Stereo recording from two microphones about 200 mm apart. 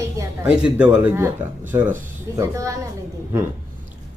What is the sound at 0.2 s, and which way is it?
Speech, 5° right (ahead or behind).